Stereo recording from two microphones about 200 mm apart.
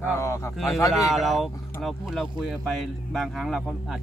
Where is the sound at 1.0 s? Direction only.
Centre (ahead or behind).